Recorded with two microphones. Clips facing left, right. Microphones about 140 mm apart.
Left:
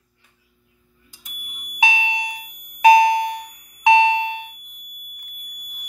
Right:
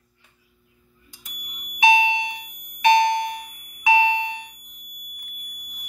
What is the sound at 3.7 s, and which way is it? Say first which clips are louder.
Doorbell: left 4 dB; 75° left (ahead or behind).